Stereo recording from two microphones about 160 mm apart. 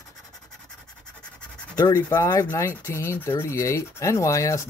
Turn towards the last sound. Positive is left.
turn(degrees=20)  # may be behind; listen again after turning